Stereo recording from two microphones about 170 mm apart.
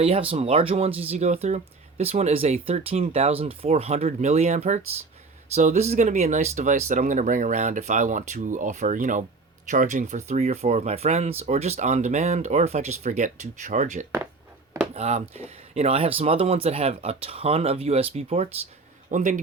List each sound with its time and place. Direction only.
0.0 s speech: 35° right (ahead or behind)
19.1 s speech: 50° right (ahead or behind)